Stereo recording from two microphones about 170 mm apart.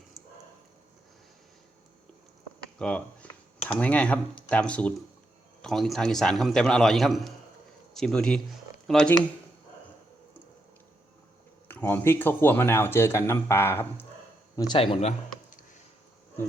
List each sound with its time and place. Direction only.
2.7 s a man's voice: 5° left (ahead or behind)
11.7 s speech: 10° left (ahead or behind)
14.5 s speech: 25° left (ahead or behind)